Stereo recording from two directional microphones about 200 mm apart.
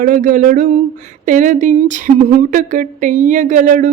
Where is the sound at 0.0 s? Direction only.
40° right (ahead or behind).